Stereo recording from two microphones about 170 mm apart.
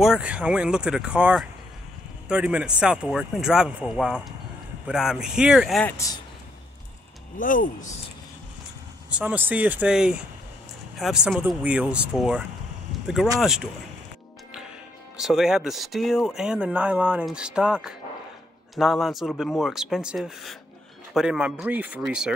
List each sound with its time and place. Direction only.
0.0 s speech: 5° right (ahead or behind)
5.9 s a man's voice: 20° left (ahead or behind)
7.3 s speech: 50° left (ahead or behind)
9.1 s speech: 10° right (ahead or behind)
15.1 s speech: centre (ahead or behind)